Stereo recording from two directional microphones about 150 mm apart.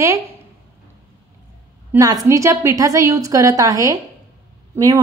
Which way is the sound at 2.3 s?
20° right (ahead or behind).